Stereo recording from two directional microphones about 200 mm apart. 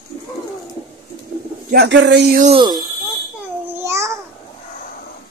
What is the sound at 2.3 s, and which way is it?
Speech, 35° right (ahead or behind).